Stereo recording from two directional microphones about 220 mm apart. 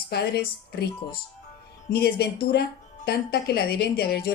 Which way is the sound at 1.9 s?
45° left (ahead or behind).